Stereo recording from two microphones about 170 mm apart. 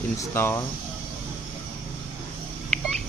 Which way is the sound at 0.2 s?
15° left (ahead or behind).